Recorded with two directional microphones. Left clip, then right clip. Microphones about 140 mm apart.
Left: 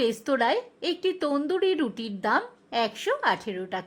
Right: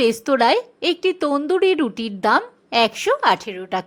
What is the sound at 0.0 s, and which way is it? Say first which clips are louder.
A woman's voice: right 8 dB; 25° right (ahead or behind).